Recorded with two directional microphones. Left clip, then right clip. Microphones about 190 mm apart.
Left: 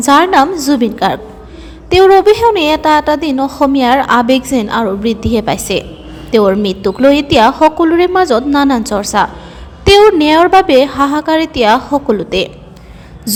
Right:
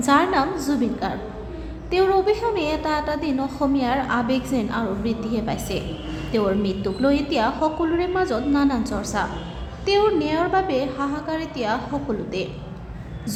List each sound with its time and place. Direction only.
0.0 s a woman's voice: 35° left (ahead or behind)